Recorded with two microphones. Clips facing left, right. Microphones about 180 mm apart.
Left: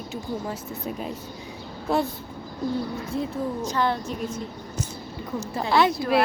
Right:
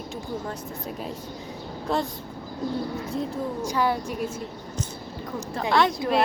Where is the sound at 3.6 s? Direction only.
10° right (ahead or behind).